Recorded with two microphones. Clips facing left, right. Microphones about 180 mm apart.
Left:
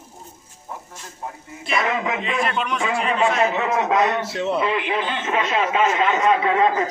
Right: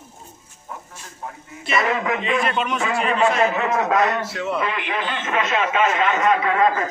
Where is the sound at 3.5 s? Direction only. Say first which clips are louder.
Even; 20° left (ahead or behind).